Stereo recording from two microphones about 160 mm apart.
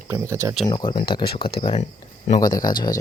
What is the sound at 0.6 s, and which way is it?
Speech, 30° left (ahead or behind).